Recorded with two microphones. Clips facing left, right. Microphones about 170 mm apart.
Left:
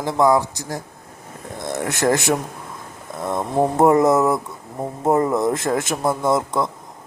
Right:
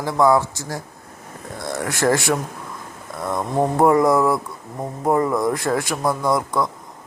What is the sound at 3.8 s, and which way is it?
Speech, 25° left (ahead or behind).